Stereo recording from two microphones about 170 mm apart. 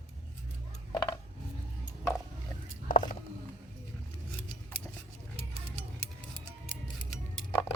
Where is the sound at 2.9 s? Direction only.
50° left (ahead or behind).